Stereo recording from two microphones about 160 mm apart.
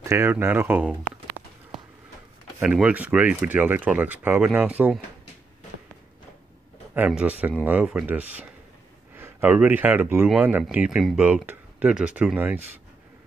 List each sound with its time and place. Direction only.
0.1 s a sound: 15° right (ahead or behind)
2.6 s speech: 5° right (ahead or behind)
7.0 s speech: 5° right (ahead or behind)